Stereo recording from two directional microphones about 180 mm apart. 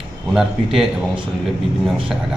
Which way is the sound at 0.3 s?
Centre (ahead or behind).